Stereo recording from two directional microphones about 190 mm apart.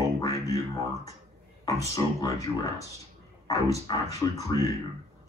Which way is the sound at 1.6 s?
15° left (ahead or behind).